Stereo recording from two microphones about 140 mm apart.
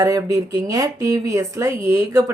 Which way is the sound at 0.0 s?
25° right (ahead or behind).